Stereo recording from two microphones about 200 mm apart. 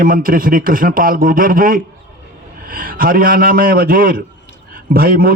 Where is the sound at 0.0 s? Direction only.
45° right (ahead or behind).